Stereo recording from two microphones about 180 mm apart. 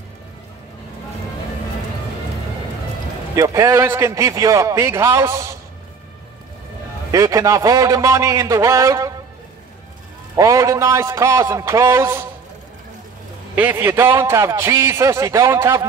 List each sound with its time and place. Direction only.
3.3 s a man's voice: 15° right (ahead or behind)
7.1 s a man's voice: 20° right (ahead or behind)
10.3 s a man's voice: 15° right (ahead or behind)
13.6 s a man's voice: 10° right (ahead or behind)